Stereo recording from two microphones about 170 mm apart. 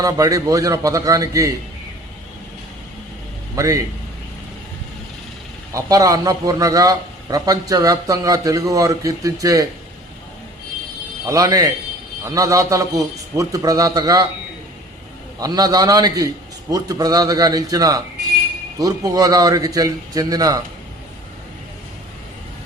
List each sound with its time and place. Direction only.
0.0 s a man's voice: 20° right (ahead or behind)
3.5 s a man's voice: 20° right (ahead or behind)
5.7 s a man's voice: 20° right (ahead or behind)
11.3 s a man's voice: 20° right (ahead or behind)
15.4 s a man's voice: 20° right (ahead or behind)